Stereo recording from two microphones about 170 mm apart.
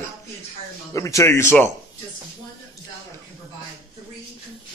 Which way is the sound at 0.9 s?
15° left (ahead or behind).